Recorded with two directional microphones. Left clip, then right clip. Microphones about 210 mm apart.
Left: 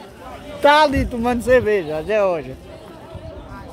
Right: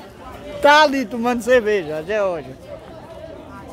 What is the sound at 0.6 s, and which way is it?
A man's voice, centre (ahead or behind).